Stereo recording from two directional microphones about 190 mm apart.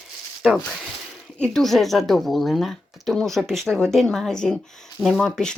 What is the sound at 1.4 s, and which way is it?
Speech, centre (ahead or behind).